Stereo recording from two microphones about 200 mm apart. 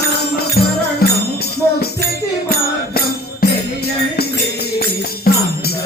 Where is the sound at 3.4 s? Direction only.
50° left (ahead or behind).